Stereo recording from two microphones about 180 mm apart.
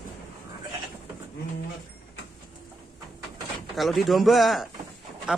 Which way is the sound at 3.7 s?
Centre (ahead or behind).